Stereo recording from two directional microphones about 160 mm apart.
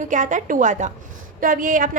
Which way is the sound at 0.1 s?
55° right (ahead or behind).